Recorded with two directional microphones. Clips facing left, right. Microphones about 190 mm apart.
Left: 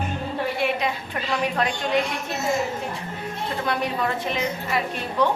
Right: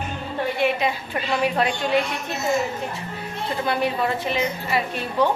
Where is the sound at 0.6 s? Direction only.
5° right (ahead or behind).